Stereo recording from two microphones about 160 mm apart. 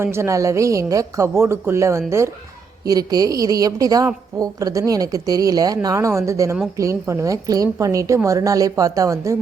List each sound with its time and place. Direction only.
0.0 s a woman's voice: 15° right (ahead or behind)